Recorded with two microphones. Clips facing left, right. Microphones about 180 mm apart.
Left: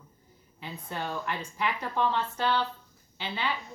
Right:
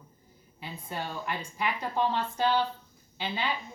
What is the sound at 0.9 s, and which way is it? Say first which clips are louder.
Speech: left 1 dB; 15° right (ahead or behind).